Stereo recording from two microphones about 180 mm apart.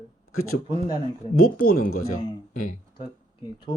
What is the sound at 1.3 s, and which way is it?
Speech, 55° left (ahead or behind).